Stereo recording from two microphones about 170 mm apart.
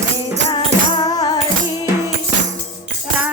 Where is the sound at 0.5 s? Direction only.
25° left (ahead or behind).